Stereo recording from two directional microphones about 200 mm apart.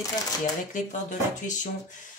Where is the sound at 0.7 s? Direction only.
40° left (ahead or behind).